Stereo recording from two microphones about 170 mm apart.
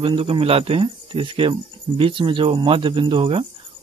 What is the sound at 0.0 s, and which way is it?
Speech, 30° right (ahead or behind).